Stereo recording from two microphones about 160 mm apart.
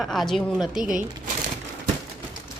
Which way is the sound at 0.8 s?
60° right (ahead or behind).